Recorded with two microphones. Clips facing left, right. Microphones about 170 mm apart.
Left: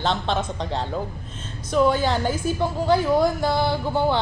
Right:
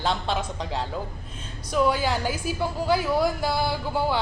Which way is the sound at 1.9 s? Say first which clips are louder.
Left 3 dB; 10° right (ahead or behind).